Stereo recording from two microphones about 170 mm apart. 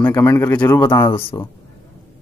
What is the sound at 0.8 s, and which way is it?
Speech, 25° left (ahead or behind).